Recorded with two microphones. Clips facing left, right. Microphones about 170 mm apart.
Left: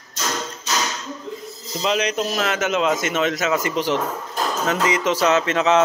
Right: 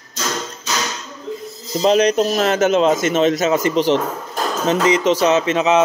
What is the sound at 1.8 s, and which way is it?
A man's voice, 35° right (ahead or behind).